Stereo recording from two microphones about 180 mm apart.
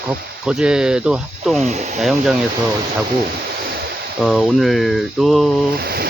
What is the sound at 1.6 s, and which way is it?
Speech, 40° right (ahead or behind).